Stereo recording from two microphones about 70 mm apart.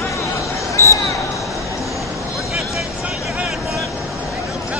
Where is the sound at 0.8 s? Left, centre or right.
Left.